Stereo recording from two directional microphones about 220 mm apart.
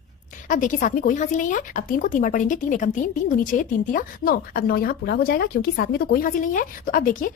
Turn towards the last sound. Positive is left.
turn(degrees=40)  # may be behind; listen again after turning